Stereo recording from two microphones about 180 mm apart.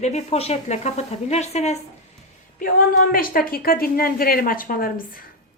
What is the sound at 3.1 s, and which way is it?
Speech, 55° left (ahead or behind).